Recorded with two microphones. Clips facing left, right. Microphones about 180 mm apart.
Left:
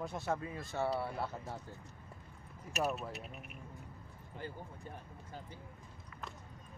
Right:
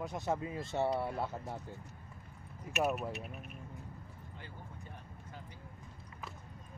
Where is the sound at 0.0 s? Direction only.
15° right (ahead or behind).